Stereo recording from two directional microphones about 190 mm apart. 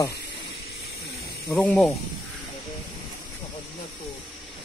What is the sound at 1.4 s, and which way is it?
Speech, 10° left (ahead or behind).